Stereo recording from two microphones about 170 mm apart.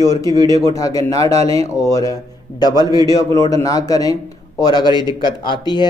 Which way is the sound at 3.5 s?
20° left (ahead or behind).